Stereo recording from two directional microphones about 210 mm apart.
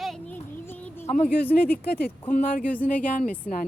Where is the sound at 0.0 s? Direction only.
5° left (ahead or behind).